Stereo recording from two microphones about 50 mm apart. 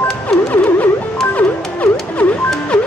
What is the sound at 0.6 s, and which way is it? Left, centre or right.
Music, left.